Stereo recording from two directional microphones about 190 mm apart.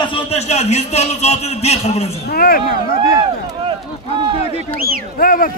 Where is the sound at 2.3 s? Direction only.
50° left (ahead or behind).